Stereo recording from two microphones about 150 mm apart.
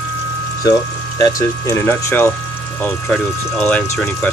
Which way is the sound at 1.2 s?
20° left (ahead or behind).